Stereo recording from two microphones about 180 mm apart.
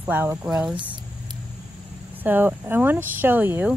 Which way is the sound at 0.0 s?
10° right (ahead or behind).